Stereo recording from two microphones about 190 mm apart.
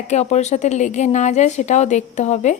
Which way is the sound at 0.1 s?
35° left (ahead or behind).